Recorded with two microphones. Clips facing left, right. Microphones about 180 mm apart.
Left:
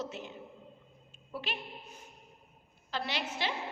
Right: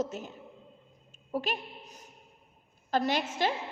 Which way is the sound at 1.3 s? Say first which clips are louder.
Right 7 dB; 45° right (ahead or behind).